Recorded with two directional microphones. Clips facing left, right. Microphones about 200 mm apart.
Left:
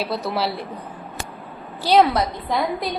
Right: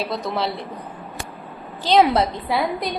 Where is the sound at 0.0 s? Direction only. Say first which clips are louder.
Left 1 dB; 5° left (ahead or behind).